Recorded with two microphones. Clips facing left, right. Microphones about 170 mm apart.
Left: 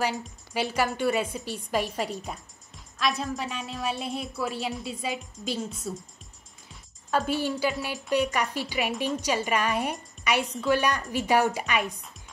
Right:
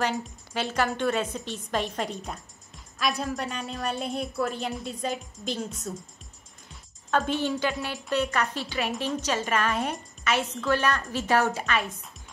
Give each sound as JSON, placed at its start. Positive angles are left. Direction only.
{"t": 0.0, "sound": "a woman's voice", "side_deg": 10}